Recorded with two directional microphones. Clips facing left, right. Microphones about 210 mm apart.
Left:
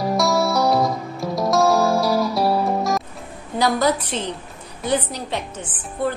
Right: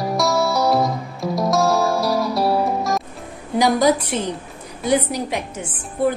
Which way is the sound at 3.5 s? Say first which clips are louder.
Right 3 dB; 10° right (ahead or behind).